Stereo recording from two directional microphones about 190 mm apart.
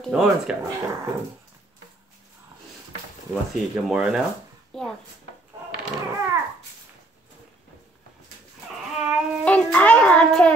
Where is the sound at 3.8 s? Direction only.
5° right (ahead or behind).